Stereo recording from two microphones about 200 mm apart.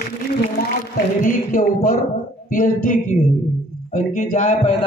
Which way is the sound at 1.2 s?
40° left (ahead or behind).